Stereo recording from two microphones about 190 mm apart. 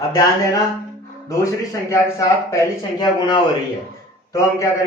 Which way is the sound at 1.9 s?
15° left (ahead or behind).